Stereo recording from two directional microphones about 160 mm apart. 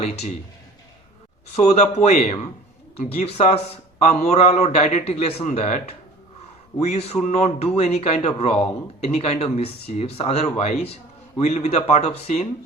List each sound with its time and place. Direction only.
1.5 s a man's voice: 45° left (ahead or behind)